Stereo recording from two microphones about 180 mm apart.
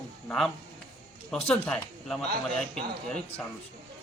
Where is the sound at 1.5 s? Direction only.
5° left (ahead or behind).